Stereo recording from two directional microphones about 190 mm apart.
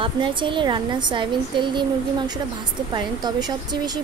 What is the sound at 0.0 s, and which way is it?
A woman's voice, 25° right (ahead or behind).